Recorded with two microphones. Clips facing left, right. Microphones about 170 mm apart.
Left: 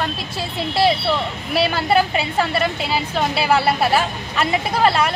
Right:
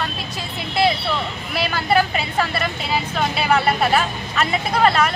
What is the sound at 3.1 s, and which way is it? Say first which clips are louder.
Speech: left 2 dB; 30° left (ahead or behind).